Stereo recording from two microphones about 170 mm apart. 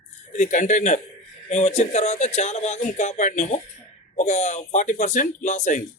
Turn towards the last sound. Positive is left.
turn(degrees=45)  # may be behind; listen again after turning